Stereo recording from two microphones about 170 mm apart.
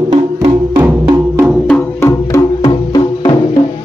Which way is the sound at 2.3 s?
25° left (ahead or behind).